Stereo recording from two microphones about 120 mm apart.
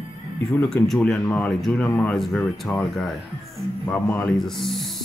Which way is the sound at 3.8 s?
15° left (ahead or behind).